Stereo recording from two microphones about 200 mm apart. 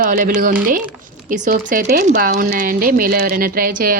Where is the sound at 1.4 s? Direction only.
55° right (ahead or behind).